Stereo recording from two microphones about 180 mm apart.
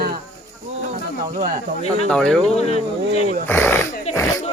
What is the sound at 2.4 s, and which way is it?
Speech, 35° left (ahead or behind).